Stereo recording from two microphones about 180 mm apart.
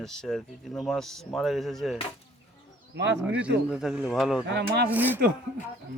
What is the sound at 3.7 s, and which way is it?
Speech, 5° right (ahead or behind).